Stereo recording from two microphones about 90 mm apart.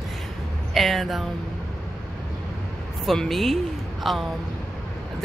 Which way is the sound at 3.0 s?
Centre (ahead or behind).